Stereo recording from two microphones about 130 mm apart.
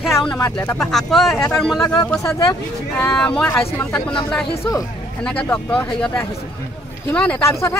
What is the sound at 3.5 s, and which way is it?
Speech, 20° left (ahead or behind).